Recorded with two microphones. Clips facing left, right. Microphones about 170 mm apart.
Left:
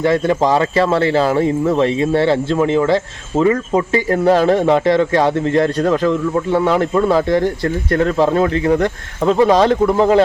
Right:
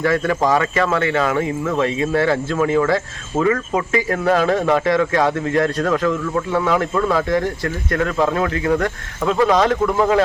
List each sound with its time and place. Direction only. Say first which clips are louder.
0.0 s speech: left 3 dB; 25° left (ahead or behind)